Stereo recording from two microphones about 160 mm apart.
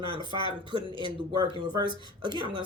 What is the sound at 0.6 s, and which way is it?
Speech, 30° right (ahead or behind).